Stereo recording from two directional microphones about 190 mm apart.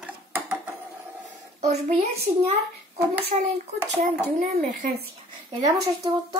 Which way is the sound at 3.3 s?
35° right (ahead or behind).